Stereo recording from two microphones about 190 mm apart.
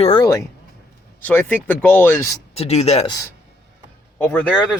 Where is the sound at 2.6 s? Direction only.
35° left (ahead or behind).